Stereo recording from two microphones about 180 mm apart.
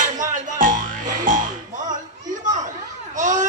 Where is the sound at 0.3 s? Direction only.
45° right (ahead or behind).